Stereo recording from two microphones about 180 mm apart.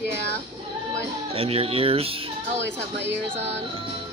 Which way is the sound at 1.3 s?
30° right (ahead or behind).